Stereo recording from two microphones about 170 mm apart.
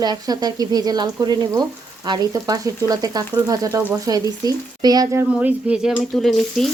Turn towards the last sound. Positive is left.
turn(degrees=0)  # may be behind; listen again after turning